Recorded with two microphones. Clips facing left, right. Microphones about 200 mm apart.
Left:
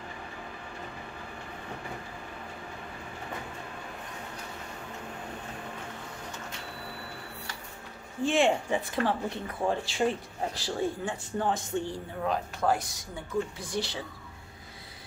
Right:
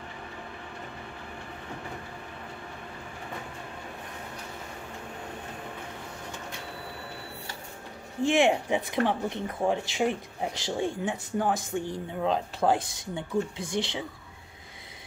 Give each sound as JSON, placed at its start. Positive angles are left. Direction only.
{"t": 8.3, "sound": "speech", "side_deg": -15}
{"t": 12.3, "sound": "speech", "side_deg": -30}